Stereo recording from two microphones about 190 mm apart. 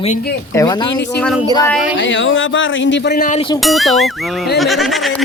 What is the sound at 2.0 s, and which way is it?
A man's voice, 80° left.